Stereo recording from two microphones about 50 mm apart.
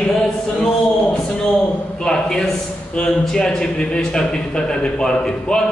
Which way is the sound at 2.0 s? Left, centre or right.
Centre.